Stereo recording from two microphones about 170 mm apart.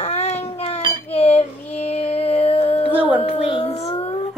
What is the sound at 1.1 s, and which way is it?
Music, 35° left (ahead or behind).